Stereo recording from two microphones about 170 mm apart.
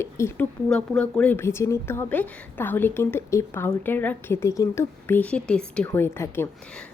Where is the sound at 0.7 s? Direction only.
5° left (ahead or behind).